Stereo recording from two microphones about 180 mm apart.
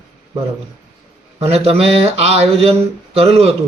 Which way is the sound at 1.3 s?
35° right (ahead or behind).